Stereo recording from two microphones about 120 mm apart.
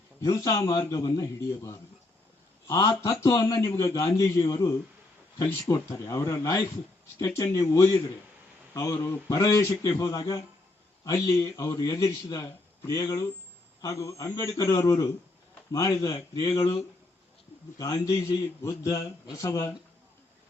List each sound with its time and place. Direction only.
0.2 s a man's voice: 25° left (ahead or behind)
17.7 s a man's voice: 30° left (ahead or behind)